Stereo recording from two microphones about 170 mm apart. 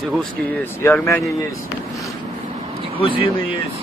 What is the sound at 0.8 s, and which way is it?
Speech, 15° left (ahead or behind).